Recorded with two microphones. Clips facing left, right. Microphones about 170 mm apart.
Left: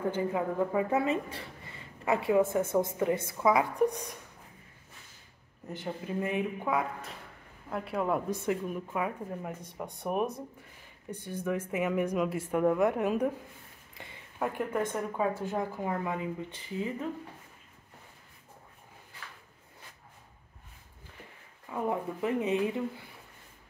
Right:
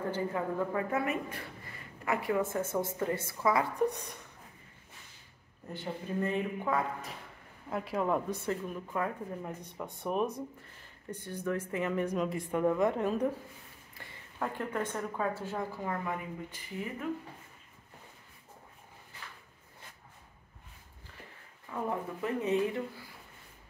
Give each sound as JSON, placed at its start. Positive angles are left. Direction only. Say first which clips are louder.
{"t": 0.1, "sound": "a woman's voice", "louder": "left 2 dB", "side_deg": 20}
{"t": 5.7, "sound": "a woman's voice", "louder": "left 1 dB", "side_deg": 15}
{"t": 7.7, "sound": "a woman's voice", "louder": "even", "side_deg": 0}
{"t": 21.8, "sound": "a woman's voice", "louder": "left 4 dB", "side_deg": 15}